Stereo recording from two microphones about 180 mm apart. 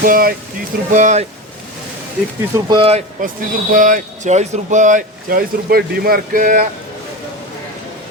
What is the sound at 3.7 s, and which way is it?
Speech, 45° right (ahead or behind).